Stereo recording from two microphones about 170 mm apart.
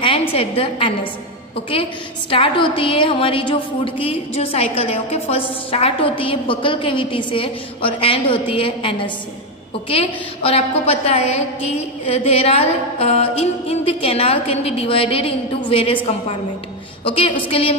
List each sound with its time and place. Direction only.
0.0 s a woman's voice: 30° left (ahead or behind)
2.3 s a woman's voice: 30° left (ahead or behind)